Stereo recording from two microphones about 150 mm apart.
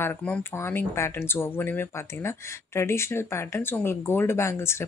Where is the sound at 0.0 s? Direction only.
10° left (ahead or behind).